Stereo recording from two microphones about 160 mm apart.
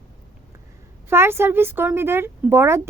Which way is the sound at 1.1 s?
15° right (ahead or behind).